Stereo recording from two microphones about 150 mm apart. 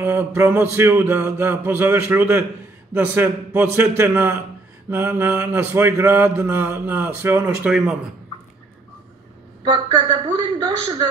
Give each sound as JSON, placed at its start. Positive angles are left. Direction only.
{"t": 0.0, "sound": "mantra", "side_deg": -15}
{"t": 9.7, "sound": "a woman's voice", "side_deg": -35}